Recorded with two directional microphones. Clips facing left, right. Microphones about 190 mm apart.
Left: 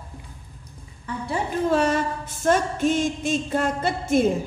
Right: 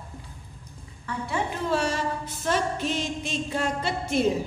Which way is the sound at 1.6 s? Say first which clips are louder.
Left 6 dB; 50° left (ahead or behind).